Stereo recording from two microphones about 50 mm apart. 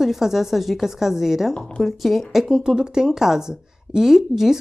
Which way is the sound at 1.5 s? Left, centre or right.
Centre.